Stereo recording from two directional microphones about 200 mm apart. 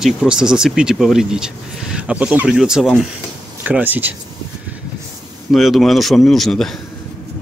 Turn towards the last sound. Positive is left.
turn(degrees=0)  # may be behind; listen again after turning